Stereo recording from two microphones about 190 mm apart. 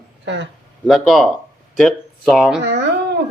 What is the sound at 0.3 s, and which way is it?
Speech, 70° right (ahead or behind).